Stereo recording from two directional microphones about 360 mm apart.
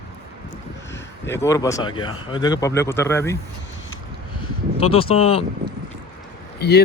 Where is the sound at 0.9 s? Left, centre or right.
Centre.